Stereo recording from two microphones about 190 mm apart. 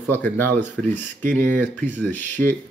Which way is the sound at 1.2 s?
45° right (ahead or behind).